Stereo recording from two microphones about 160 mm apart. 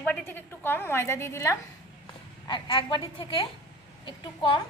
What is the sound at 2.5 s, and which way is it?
A woman's voice, 30° left (ahead or behind).